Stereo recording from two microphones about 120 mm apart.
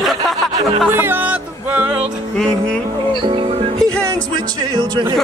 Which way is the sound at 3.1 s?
45° right (ahead or behind).